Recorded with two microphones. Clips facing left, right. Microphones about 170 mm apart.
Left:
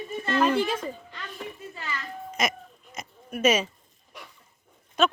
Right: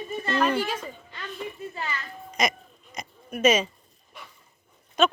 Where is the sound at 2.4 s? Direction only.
5° left (ahead or behind).